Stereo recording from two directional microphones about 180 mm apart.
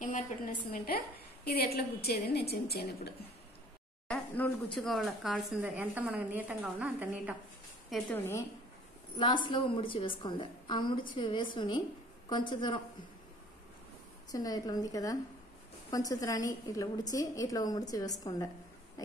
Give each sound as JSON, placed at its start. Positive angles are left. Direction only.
{"t": 0.0, "sound": "a woman's voice", "side_deg": 45}
{"t": 4.1, "sound": "speech", "side_deg": 5}
{"t": 7.9, "sound": "a woman's voice", "side_deg": 10}
{"t": 9.2, "sound": "a woman's voice", "side_deg": 25}
{"t": 14.3, "sound": "a woman's voice", "side_deg": 20}
{"t": 19.0, "sound": "oink", "side_deg": 20}